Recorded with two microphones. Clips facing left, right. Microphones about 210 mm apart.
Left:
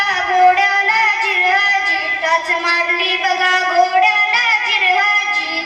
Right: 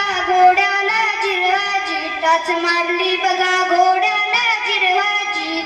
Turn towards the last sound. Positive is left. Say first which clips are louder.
# even
turn(degrees=-40)  # may be behind; listen again after turning